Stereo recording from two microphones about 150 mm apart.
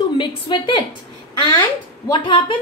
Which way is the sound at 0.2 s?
30° left (ahead or behind).